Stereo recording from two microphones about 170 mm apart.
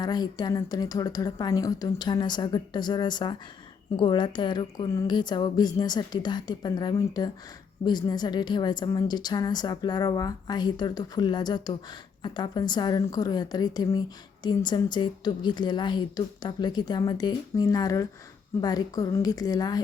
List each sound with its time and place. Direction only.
0.0 s a woman's voice: 25° left (ahead or behind)